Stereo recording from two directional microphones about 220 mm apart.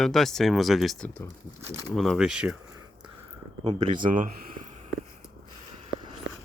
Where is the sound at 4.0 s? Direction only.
35° right (ahead or behind).